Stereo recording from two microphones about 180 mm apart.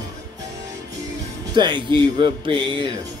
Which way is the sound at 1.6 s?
25° right (ahead or behind).